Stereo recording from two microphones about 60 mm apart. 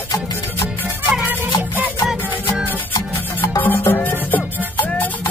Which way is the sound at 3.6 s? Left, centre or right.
Left.